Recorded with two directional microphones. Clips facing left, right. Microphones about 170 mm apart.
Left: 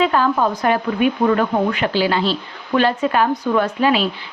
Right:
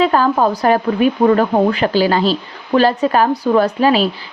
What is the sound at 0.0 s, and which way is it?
A woman's voice, 40° right (ahead or behind).